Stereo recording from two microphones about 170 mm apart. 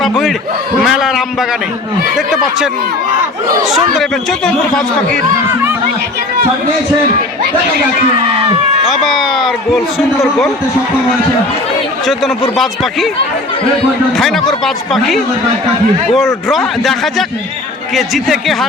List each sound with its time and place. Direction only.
0.8 s a man's voice: centre (ahead or behind)
8.1 s a sound: 30° right (ahead or behind)
8.9 s a man's voice: centre (ahead or behind)
12.0 s a man's voice: centre (ahead or behind)
14.1 s a man's voice: centre (ahead or behind)